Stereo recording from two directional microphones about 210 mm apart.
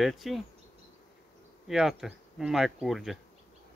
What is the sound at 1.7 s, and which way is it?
Speech, centre (ahead or behind).